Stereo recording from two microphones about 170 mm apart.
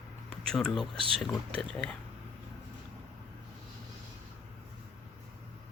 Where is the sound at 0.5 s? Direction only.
5° left (ahead or behind).